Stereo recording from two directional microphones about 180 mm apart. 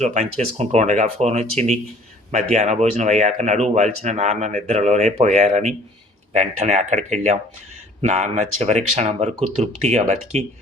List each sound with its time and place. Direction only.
0.0 s speech: 40° right (ahead or behind)